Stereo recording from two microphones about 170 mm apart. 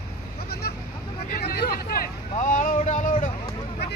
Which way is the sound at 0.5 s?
65° left (ahead or behind).